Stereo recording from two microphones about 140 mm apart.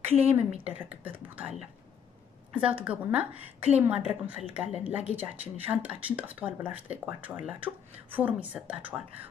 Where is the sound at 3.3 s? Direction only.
45° right (ahead or behind).